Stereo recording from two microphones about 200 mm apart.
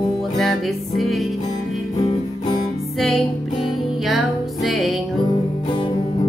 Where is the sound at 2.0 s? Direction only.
20° left (ahead or behind).